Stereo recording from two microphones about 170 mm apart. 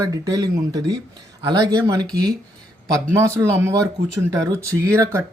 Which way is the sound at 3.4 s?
15° right (ahead or behind).